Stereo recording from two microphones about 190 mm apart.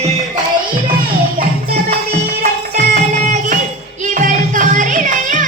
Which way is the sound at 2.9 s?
40° right (ahead or behind).